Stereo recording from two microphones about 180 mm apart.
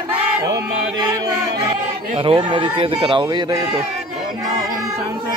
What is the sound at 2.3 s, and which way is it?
Speech, 25° right (ahead or behind).